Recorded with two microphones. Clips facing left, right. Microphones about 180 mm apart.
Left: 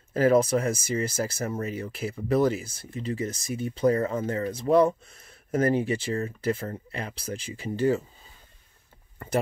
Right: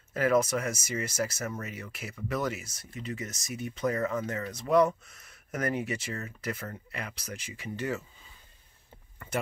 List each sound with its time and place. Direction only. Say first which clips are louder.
0.1 s speech: left 5 dB; 30° left (ahead or behind)